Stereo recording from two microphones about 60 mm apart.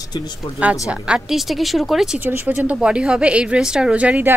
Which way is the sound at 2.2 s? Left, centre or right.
Right.